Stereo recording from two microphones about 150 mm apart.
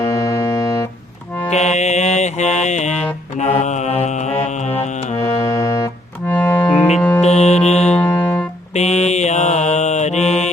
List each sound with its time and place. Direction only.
0.0 s music: 20° left (ahead or behind)
1.5 s mantra: 50° left (ahead or behind)
5.3 s music: 20° left (ahead or behind)
6.3 s music: 10° left (ahead or behind)
7.2 s music: 45° left (ahead or behind)
7.9 s music: 10° left (ahead or behind)
8.7 s mantra: 50° left (ahead or behind)